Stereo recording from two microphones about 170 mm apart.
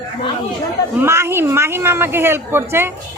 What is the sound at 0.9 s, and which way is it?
Speech, 15° right (ahead or behind).